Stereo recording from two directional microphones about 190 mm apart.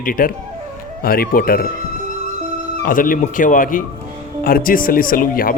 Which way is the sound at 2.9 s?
45° left (ahead or behind).